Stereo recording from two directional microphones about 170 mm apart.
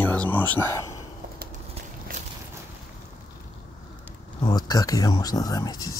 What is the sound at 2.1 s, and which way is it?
Boat, 55° right (ahead or behind).